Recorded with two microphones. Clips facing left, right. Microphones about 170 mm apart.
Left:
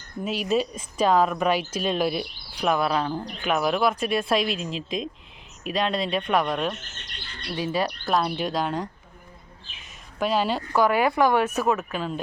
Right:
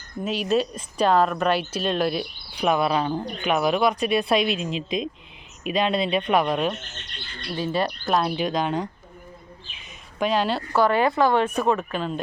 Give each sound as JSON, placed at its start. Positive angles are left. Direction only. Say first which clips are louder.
{"t": 0.3, "sound": "speech", "louder": "right 2 dB", "side_deg": 10}
{"t": 7.5, "sound": "speech", "louder": "right 1 dB", "side_deg": 10}
{"t": 7.9, "sound": "speech", "louder": "right 1 dB", "side_deg": -5}
{"t": 10.2, "sound": "speech", "louder": "right 1 dB", "side_deg": 5}